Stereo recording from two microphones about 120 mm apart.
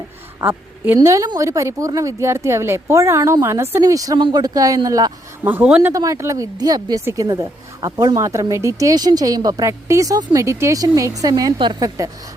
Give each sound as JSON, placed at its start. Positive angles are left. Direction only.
{"t": 0.3, "sound": "a woman's voice", "side_deg": -15}
{"t": 0.9, "sound": "a man's voice", "side_deg": -25}
{"t": 5.5, "sound": "speech", "side_deg": -10}
{"t": 5.9, "sound": "a man's voice", "side_deg": -25}